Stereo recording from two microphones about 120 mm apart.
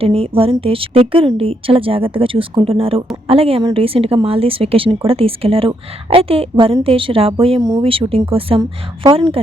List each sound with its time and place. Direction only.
0.0 s a woman's voice: 55° right (ahead or behind)